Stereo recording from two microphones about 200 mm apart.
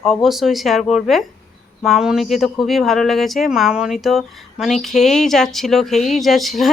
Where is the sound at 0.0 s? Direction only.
Centre (ahead or behind).